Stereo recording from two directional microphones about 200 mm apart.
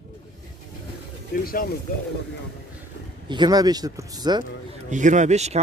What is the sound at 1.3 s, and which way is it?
Speech, 45° left (ahead or behind).